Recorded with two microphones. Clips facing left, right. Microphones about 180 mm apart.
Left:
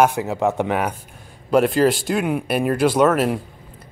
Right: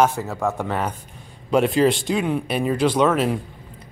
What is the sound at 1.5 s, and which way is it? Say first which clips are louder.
Speech: left 1 dB; centre (ahead or behind).